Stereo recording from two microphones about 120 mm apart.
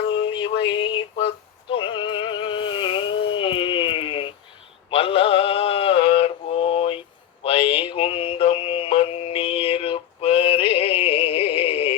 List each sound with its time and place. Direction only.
0.3 s a sound: 45° left (ahead or behind)
1.7 s music: 45° left (ahead or behind)
4.9 s mantra: 50° left (ahead or behind)